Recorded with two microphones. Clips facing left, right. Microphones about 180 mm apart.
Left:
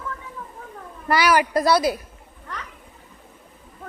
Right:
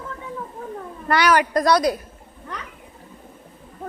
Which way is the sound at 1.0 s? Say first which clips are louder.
Right 1 dB; 5° left (ahead or behind).